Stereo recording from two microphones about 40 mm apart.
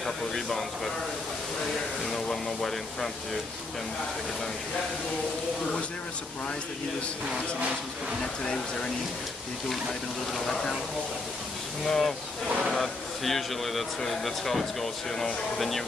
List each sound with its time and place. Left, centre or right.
0.0 s speech: centre
2.2 s speech: centre
8.2 s speech: centre
10.4 s speech: centre
11.8 s speech: centre